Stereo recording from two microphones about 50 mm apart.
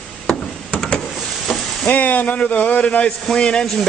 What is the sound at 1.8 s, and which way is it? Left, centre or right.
Speech, left.